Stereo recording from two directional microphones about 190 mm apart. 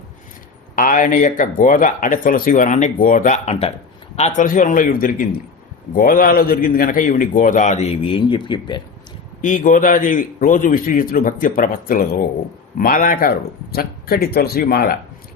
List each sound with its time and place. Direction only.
0.8 s speech: 45° left (ahead or behind); by 8.8 s 25° left (ahead or behind)
9.4 s speech: 40° left (ahead or behind)